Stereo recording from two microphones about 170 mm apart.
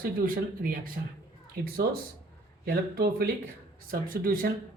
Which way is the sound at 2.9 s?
65° right (ahead or behind).